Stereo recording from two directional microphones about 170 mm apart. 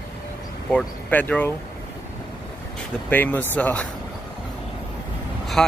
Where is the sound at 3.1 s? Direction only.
10° left (ahead or behind).